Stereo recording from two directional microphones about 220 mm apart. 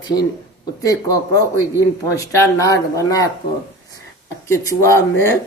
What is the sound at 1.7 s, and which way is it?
Speech, 15° left (ahead or behind).